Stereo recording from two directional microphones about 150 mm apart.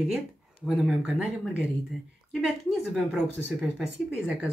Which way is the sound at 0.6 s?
5° right (ahead or behind).